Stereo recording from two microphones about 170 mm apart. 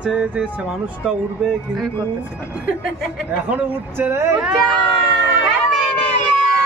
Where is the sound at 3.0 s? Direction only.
5° right (ahead or behind).